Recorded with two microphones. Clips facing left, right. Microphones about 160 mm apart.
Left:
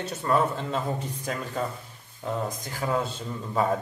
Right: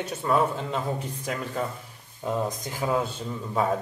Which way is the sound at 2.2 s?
15° right (ahead or behind).